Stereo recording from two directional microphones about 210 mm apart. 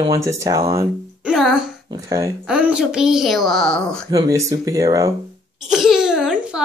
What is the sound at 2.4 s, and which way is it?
Speech, 5° right (ahead or behind).